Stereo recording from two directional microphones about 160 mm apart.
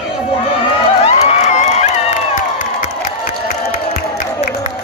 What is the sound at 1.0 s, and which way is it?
Crowd, 40° left (ahead or behind).